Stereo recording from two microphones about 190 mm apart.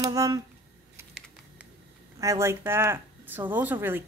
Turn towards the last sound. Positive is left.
turn(degrees=-10)  # may be behind; listen again after turning